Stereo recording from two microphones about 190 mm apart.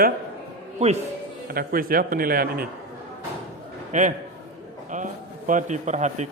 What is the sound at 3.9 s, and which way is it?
A man's voice, 40° right (ahead or behind).